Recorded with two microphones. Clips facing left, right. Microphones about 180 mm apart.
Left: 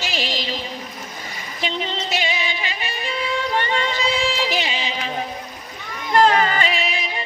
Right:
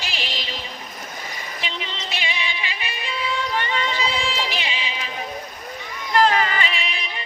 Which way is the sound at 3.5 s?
40° left (ahead or behind).